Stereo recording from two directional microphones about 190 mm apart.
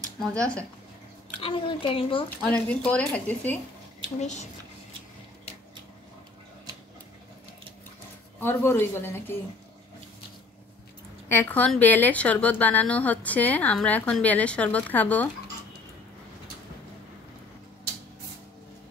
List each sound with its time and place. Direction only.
0.2 s speech: 5° left (ahead or behind)
1.4 s speech: 30° left (ahead or behind)
2.4 s a woman's voice: 5° left (ahead or behind)
4.2 s a child's voice: 35° left (ahead or behind)
8.4 s a woman's voice: 10° left (ahead or behind)
11.2 s a woman's voice: 10° left (ahead or behind)